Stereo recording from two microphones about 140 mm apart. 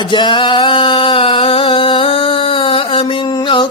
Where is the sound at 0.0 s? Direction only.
35° left (ahead or behind).